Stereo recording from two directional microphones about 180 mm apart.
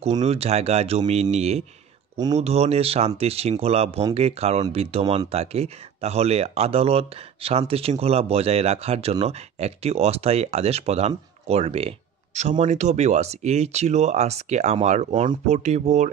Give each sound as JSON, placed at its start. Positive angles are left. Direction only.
{"t": 0.2, "sound": "speech", "side_deg": -35}